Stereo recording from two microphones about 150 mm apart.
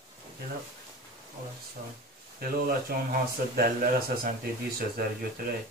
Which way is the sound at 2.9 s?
90° right.